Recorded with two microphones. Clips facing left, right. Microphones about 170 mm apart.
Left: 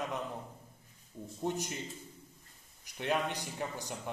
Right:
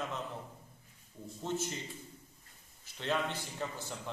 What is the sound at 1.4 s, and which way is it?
Speech, 15° left (ahead or behind).